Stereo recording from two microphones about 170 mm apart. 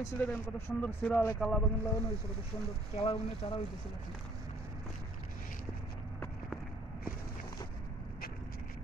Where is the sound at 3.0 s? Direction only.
35° left (ahead or behind).